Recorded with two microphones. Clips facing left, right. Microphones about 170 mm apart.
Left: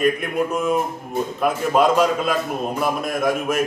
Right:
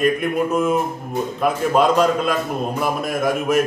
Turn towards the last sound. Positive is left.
turn(degrees=0)  # may be behind; listen again after turning